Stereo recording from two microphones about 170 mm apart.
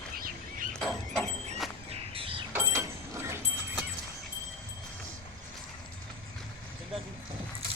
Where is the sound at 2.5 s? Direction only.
15° right (ahead or behind).